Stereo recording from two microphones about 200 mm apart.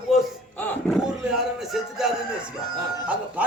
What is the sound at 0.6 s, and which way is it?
Music, centre (ahead or behind).